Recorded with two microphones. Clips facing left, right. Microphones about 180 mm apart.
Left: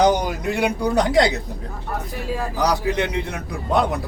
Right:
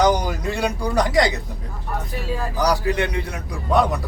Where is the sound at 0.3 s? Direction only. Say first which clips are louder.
Left 2 dB; 15° left (ahead or behind).